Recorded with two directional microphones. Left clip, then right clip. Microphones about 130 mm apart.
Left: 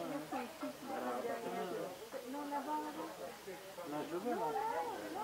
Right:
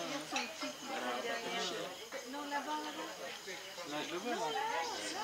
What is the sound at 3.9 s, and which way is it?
Chatter, 30° right (ahead or behind).